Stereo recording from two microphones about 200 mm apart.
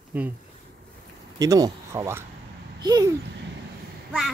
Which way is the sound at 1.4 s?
15° right (ahead or behind).